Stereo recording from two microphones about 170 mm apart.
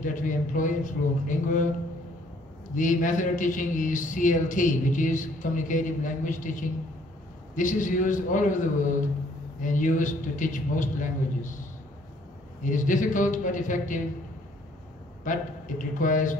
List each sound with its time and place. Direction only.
0.0 s a man's voice: 50° left (ahead or behind)
2.7 s a man's voice: 50° left (ahead or behind)
12.6 s a man's voice: 50° left (ahead or behind)
15.2 s a man's voice: 50° left (ahead or behind)